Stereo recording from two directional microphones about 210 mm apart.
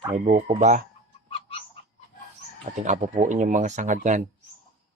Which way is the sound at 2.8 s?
35° right (ahead or behind).